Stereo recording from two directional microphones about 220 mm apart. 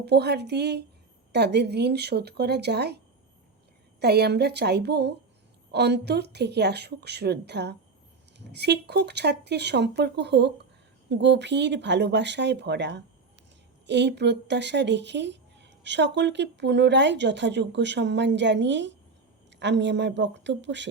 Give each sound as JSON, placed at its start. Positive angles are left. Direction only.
{"t": 0.0, "sound": "speech", "side_deg": -50}
{"t": 4.0, "sound": "speech", "side_deg": -45}